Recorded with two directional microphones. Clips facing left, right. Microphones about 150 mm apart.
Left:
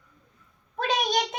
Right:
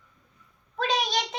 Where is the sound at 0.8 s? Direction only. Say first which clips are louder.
Left 1 dB; 50° left (ahead or behind).